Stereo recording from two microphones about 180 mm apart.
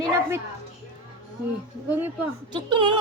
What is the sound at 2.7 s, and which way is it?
Speech, 25° right (ahead or behind).